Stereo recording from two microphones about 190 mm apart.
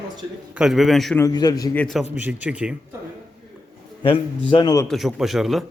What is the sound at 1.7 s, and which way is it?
A man's voice, centre (ahead or behind).